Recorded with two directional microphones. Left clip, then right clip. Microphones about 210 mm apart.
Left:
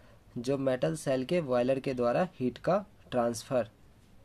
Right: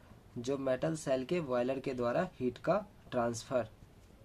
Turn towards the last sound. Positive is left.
turn(degrees=35)  # may be behind; listen again after turning